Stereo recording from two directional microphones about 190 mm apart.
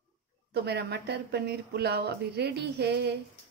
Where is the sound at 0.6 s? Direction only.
60° right (ahead or behind).